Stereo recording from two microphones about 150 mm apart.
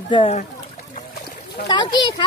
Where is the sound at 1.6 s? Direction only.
30° left (ahead or behind).